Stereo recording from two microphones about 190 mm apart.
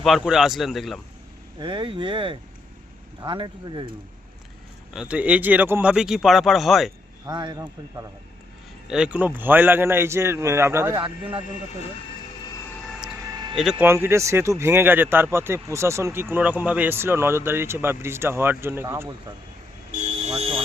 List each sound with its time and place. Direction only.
0.0 s speech: centre (ahead or behind)
1.5 s speech: 25° right (ahead or behind)
4.9 s speech: 5° right (ahead or behind)
7.3 s speech: 20° right (ahead or behind)
8.9 s speech: 5° right (ahead or behind)
13.3 s a sound: 20° right (ahead or behind)
13.6 s speech: 5° right (ahead or behind)
20.2 s a sound: 30° right (ahead or behind)